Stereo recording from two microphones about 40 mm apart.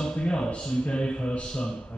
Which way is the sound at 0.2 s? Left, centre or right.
Left.